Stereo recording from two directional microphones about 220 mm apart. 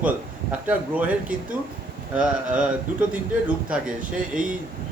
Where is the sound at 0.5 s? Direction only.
5° right (ahead or behind).